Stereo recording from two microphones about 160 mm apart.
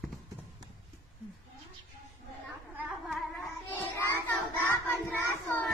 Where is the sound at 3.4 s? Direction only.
15° left (ahead or behind).